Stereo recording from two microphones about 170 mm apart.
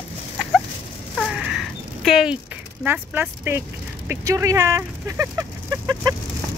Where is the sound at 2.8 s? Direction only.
10° right (ahead or behind).